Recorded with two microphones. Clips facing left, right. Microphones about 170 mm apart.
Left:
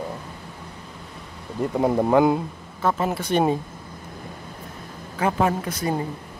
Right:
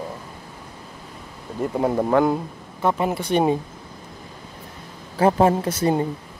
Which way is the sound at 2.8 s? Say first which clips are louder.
Right 2 dB; 15° right (ahead or behind).